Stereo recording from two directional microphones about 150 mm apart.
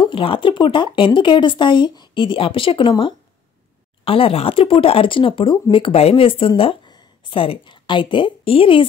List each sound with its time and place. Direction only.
0.0 s speech: 35° left (ahead or behind)